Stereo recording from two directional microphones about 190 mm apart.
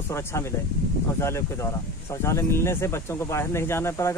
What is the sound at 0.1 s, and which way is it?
Speech, 15° left (ahead or behind).